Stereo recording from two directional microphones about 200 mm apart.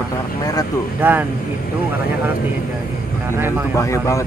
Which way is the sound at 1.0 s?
10° right (ahead or behind).